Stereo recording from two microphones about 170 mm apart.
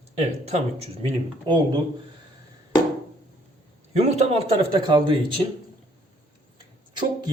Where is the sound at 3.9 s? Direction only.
40° right (ahead or behind).